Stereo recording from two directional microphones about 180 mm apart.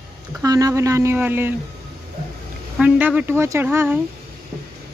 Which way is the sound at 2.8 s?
10° right (ahead or behind).